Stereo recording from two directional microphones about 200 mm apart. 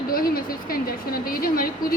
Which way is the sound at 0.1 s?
45° left (ahead or behind).